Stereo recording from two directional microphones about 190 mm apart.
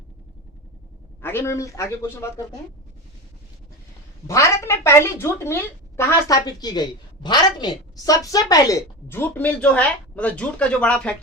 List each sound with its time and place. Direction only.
1.2 s a woman's voice: 10° left (ahead or behind)
4.3 s a woman's voice: 15° left (ahead or behind)